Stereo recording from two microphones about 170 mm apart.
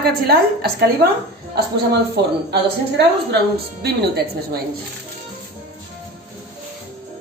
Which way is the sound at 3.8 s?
70° right (ahead or behind).